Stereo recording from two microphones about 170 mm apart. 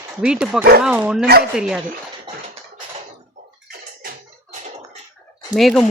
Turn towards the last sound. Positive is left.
turn(degrees=0)  # may be behind; listen again after turning